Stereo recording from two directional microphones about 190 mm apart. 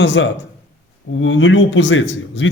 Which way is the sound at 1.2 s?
85° left.